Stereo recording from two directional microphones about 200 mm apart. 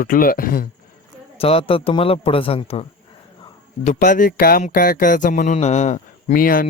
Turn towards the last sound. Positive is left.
turn(degrees=45)  # may be behind; listen again after turning